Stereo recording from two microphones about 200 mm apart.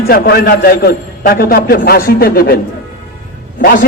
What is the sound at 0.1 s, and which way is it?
A man's voice, 50° left (ahead or behind).